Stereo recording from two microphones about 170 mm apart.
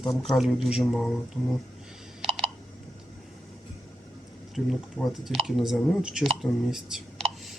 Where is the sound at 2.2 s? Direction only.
35° right (ahead or behind).